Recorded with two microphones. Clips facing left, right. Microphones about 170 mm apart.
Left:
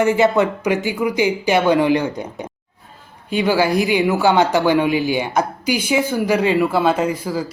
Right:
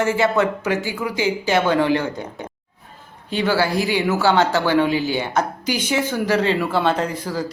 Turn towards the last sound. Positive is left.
turn(degrees=10)  # may be behind; listen again after turning